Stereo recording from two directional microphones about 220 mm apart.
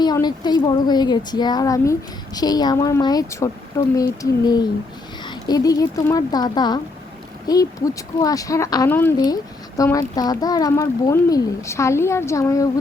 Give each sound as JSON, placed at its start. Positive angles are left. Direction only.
{"t": 0.0, "sound": "speech", "side_deg": 20}